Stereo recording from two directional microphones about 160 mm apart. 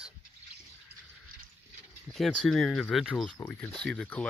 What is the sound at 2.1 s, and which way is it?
Speech, centre (ahead or behind).